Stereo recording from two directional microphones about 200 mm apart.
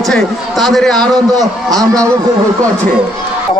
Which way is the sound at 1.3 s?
20° right (ahead or behind).